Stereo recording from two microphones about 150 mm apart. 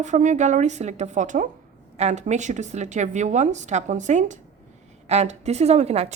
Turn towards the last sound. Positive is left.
turn(degrees=-45)  # may be behind; listen again after turning